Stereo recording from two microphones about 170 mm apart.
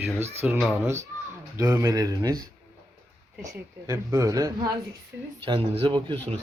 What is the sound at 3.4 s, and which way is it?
Speech, 15° right (ahead or behind).